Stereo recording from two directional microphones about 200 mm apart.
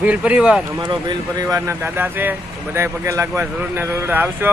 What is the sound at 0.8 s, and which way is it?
Speech, 20° right (ahead or behind).